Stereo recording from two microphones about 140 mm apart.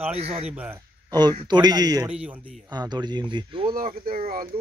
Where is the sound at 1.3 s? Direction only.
30° right (ahead or behind).